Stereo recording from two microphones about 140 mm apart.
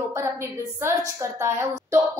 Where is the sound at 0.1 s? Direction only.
20° right (ahead or behind).